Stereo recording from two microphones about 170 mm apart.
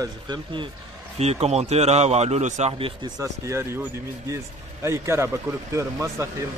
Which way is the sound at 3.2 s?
15° right (ahead or behind).